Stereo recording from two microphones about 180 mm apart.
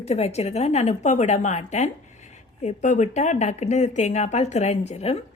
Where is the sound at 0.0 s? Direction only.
35° left (ahead or behind).